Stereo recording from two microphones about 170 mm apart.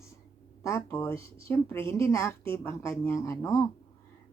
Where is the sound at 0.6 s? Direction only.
15° left (ahead or behind).